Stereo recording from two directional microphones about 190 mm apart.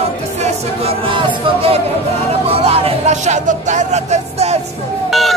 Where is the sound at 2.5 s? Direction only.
30° right (ahead or behind).